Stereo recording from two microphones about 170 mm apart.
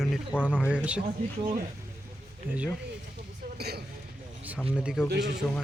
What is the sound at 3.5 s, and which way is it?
Speech, 70° right (ahead or behind).